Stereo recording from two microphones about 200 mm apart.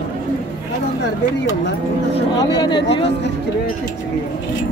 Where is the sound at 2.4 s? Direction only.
20° left (ahead or behind).